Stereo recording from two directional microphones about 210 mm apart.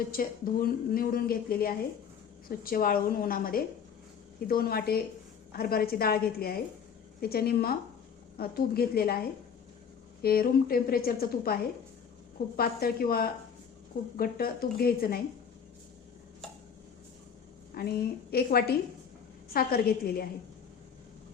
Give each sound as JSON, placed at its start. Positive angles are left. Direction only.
{"t": 0.1, "sound": "speech", "side_deg": 45}
{"t": 10.2, "sound": "speech", "side_deg": 45}
{"t": 17.7, "sound": "speech", "side_deg": 45}